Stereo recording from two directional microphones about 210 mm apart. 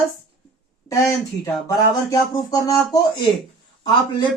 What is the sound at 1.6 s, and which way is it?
Speech, 15° left (ahead or behind).